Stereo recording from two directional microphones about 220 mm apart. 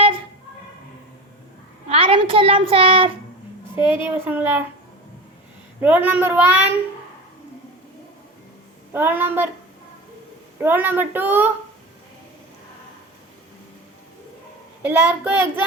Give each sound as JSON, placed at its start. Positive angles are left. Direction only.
{"t": 1.9, "sound": "a child's voice", "side_deg": -25}
{"t": 3.8, "sound": "a child's voice", "side_deg": -10}
{"t": 5.8, "sound": "a child's voice", "side_deg": -5}
{"t": 8.9, "sound": "a child's voice", "side_deg": -10}
{"t": 10.6, "sound": "a child's voice", "side_deg": -10}
{"t": 14.8, "sound": "a child's voice", "side_deg": -10}